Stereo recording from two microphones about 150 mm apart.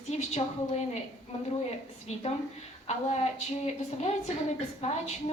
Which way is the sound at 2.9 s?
45° left (ahead or behind).